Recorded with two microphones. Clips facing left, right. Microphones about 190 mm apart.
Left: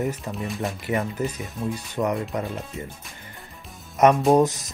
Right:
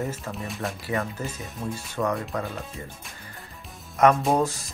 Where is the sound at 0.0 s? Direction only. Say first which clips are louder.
Left 4 dB; 15° left (ahead or behind).